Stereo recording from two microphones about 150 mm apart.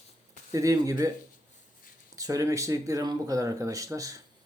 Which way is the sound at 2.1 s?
25° right (ahead or behind).